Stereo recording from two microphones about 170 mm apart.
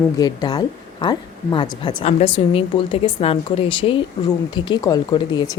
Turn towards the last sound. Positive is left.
turn(degrees=25)  # may be behind; listen again after turning